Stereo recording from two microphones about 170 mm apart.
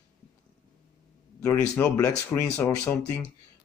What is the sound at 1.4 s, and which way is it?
Speech, 15° left (ahead or behind).